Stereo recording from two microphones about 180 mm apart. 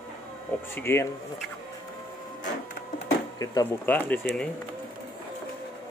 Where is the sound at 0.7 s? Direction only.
15° left (ahead or behind).